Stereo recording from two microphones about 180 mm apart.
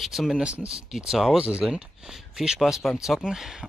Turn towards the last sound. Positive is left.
turn(degrees=-5)  # may be behind; listen again after turning